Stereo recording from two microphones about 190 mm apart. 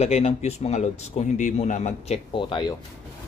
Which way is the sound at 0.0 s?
35° left (ahead or behind).